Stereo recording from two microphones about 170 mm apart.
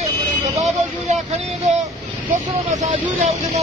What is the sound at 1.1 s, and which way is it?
Vehicle, 45° right (ahead or behind).